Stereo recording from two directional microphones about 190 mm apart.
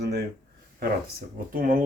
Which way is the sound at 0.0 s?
60° right (ahead or behind).